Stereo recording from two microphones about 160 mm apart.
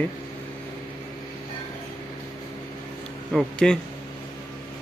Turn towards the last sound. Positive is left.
turn(degrees=0)  # may be behind; listen again after turning